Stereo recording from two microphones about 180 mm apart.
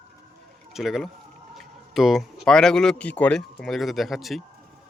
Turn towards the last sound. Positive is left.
turn(degrees=0)  # may be behind; listen again after turning